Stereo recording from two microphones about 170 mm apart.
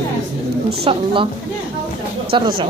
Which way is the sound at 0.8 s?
30° right (ahead or behind).